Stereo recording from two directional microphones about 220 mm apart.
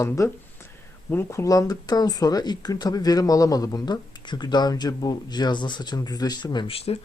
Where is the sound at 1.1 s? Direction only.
10° left (ahead or behind).